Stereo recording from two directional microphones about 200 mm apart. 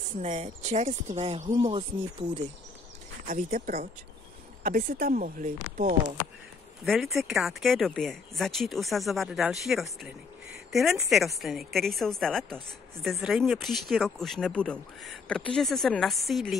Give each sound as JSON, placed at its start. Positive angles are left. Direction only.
{"t": 0.2, "sound": "speech", "side_deg": -35}
{"t": 3.3, "sound": "speech", "side_deg": -40}
{"t": 7.2, "sound": "speech", "side_deg": 0}